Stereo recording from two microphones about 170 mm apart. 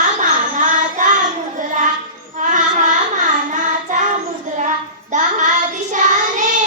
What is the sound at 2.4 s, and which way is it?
Child singing, 45° right (ahead or behind).